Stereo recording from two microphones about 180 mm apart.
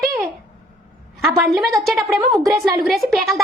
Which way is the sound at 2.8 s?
Centre (ahead or behind).